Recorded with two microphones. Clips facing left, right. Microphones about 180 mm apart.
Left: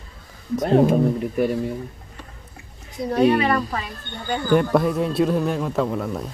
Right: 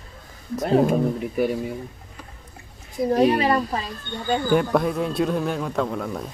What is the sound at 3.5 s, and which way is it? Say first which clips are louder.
Speech: right 1 dB; 30° right (ahead or behind).